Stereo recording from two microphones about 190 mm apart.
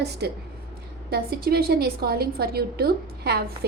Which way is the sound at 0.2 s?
60° right (ahead or behind).